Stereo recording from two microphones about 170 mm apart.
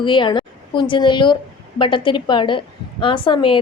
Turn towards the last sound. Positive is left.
turn(degrees=30)  # may be behind; listen again after turning